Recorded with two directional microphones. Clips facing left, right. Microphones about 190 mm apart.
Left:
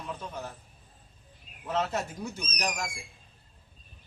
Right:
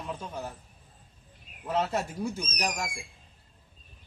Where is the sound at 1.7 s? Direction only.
5° right (ahead or behind).